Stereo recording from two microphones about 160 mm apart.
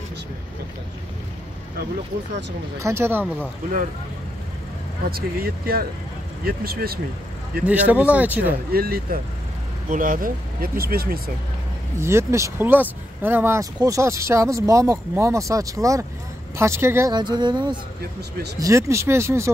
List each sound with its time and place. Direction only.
2.8 s speech: 15° right (ahead or behind)
5.1 s speech: 70° right (ahead or behind)
7.6 s speech: 10° right (ahead or behind)
8.7 s speech: 70° right (ahead or behind)
9.8 s speech: 55° right (ahead or behind)
12.0 s speech: 15° right (ahead or behind)
17.1 s speech: 25° right (ahead or behind)